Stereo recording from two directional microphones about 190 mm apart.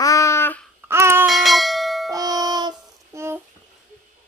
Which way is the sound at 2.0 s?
20° right (ahead or behind).